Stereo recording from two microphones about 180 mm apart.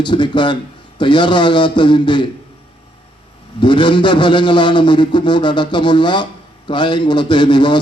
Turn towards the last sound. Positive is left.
turn(degrees=25)  # may be behind; listen again after turning